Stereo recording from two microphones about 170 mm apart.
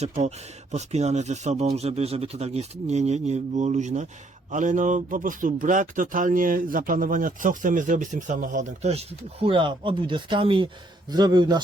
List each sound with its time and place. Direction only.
0.0 s speech: 40° right (ahead or behind); by 11.6 s 25° right (ahead or behind)